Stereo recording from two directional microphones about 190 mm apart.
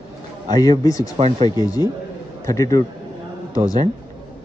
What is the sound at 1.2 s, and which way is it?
Speech, 30° right (ahead or behind).